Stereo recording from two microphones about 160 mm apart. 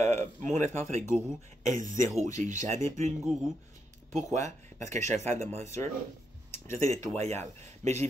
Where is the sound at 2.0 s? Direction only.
20° left (ahead or behind).